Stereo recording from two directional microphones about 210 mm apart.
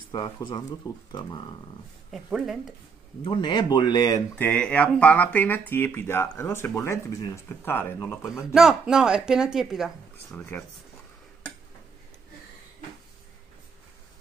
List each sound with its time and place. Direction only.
0.1 s speech: 20° left (ahead or behind)
2.0 s speech: centre (ahead or behind)
3.3 s speech: 20° left (ahead or behind)
4.4 s speech: 5° left (ahead or behind)
8.5 s speech: centre (ahead or behind)
10.3 s speech: 10° left (ahead or behind)